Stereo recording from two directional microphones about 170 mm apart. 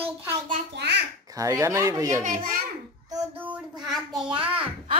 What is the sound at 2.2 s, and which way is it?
Speech, 55° right (ahead or behind).